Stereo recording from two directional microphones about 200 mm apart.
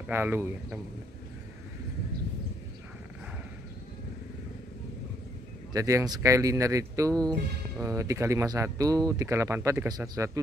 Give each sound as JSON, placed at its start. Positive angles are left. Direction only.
{"t": 0.1, "sound": "speech", "side_deg": -10}
{"t": 5.7, "sound": "speech", "side_deg": -15}